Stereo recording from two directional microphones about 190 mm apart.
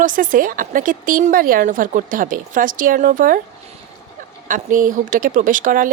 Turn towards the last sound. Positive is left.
turn(degrees=-45)  # may be behind; listen again after turning